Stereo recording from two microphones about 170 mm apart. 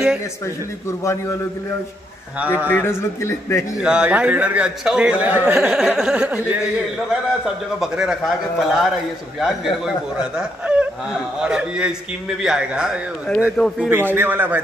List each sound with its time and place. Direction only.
2.4 s a man's voice: 10° right (ahead or behind)
2.7 s a man's voice: 15° left (ahead or behind)
3.8 s a man's voice: 5° right (ahead or behind)
7.8 s a man's voice: 5° right (ahead or behind)
13.7 s a man's voice: 10° right (ahead or behind)